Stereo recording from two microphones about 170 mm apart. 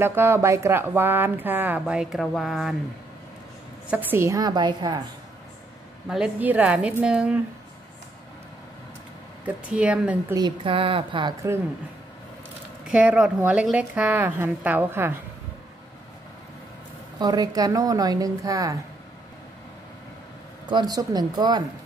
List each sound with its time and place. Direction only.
0.0 s speech: 15° right (ahead or behind)
3.9 s a woman's voice: 15° right (ahead or behind)
6.0 s speech: 5° right (ahead or behind)
9.4 s speech: 5° right (ahead or behind)
10.3 s speech: 30° right (ahead or behind)
12.8 s speech: 5° right (ahead or behind)
17.2 s a woman's voice: 25° right (ahead or behind)
20.6 s a woman's voice: 25° right (ahead or behind)